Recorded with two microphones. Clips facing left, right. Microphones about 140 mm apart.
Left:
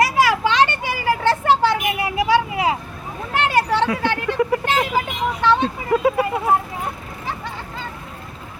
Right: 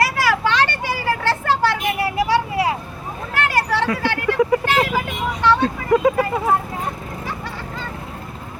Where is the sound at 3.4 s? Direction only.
20° left (ahead or behind).